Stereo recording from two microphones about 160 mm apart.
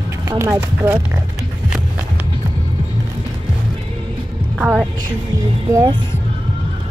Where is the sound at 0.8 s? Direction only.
15° right (ahead or behind).